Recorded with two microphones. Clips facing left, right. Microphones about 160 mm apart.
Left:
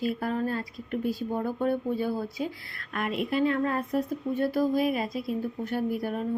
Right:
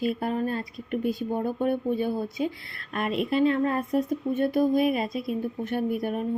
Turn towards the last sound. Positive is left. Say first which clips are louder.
# right 2 dB
turn(degrees=-20)  # may be behind; listen again after turning